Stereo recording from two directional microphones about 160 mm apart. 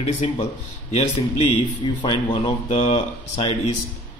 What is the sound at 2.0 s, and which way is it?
Speech, 30° left (ahead or behind).